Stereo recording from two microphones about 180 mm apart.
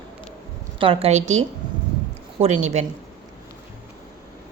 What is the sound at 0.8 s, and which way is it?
A woman's voice, 30° right (ahead or behind).